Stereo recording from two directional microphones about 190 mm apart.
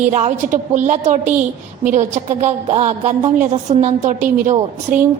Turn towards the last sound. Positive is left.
turn(degrees=-40)  # may be behind; listen again after turning